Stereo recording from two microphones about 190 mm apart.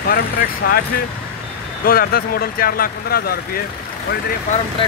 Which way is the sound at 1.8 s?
50° left (ahead or behind).